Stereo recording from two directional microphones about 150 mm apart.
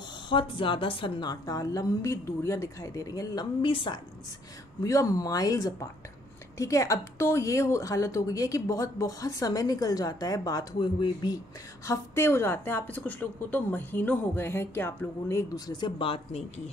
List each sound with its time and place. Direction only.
0.3 s speech: 35° left (ahead or behind)
3.6 s a woman's voice: 35° left (ahead or behind)
4.8 s speech: 25° left (ahead or behind); by 16.7 s 45° left (ahead or behind)